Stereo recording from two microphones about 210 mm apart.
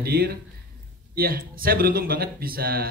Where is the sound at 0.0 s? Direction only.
50° right (ahead or behind).